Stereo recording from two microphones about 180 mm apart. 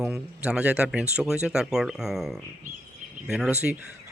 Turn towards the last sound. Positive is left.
turn(degrees=-5)  # may be behind; listen again after turning